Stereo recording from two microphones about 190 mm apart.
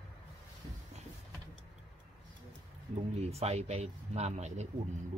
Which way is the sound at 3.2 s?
35° right (ahead or behind).